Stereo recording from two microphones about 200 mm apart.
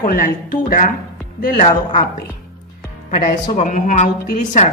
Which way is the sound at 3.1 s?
45° left (ahead or behind).